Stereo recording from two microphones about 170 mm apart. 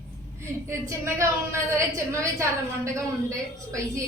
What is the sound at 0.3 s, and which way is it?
A woman's voice, 15° right (ahead or behind).